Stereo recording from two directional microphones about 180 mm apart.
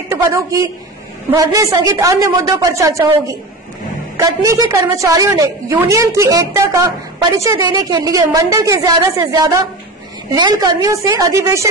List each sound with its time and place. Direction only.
0.1 s a woman's voice: 15° right (ahead or behind)